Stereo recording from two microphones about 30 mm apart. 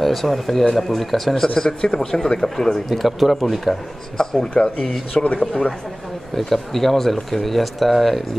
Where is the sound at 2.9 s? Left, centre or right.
Centre.